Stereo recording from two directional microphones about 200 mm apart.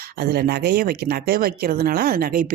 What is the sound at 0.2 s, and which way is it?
Speech, 50° right (ahead or behind).